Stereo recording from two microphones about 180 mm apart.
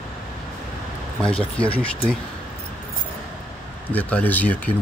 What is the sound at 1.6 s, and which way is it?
Speech, 5° left (ahead or behind).